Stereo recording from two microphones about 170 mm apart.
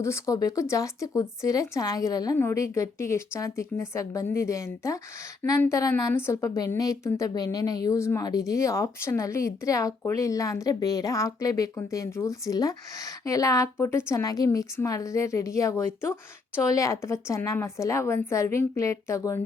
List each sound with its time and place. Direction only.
0.0 s a woman's voice: 20° left (ahead or behind)